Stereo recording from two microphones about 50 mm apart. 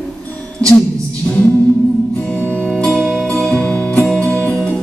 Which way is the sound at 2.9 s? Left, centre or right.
Centre.